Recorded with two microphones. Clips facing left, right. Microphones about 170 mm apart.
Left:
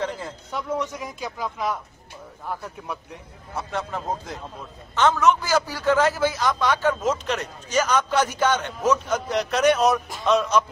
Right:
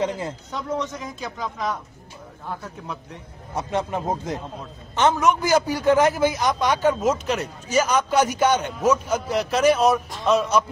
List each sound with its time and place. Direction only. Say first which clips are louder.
0.5 s speech: left 2 dB; 10° left (ahead or behind)
3.5 s a man's voice: right 4 dB; 20° right (ahead or behind); by 10.6 s 5° right (ahead or behind)